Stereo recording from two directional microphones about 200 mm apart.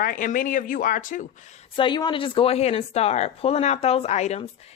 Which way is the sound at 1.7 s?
25° left (ahead or behind).